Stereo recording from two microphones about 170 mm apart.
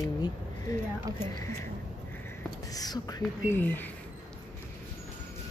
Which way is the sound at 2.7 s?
20° left (ahead or behind).